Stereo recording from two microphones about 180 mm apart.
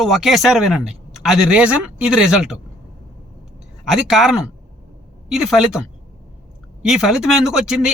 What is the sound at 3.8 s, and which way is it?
Speech, centre (ahead or behind).